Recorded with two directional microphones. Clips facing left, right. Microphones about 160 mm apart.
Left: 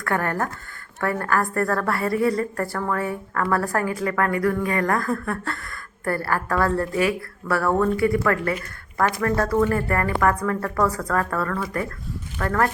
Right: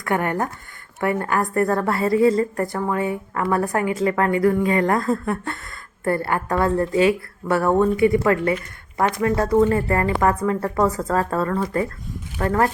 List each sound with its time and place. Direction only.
0.0 s a woman's voice: 20° right (ahead or behind)